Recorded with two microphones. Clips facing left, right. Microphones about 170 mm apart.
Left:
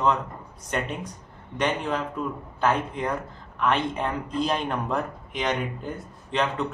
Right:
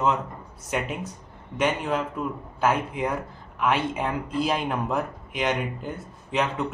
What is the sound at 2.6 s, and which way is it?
Speech, 5° right (ahead or behind).